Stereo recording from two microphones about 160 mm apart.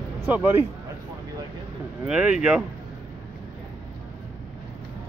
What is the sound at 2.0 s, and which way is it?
Speech, 5° right (ahead or behind).